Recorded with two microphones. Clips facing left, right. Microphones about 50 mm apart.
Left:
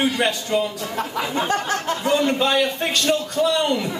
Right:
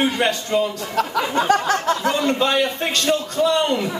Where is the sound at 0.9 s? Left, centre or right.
Right.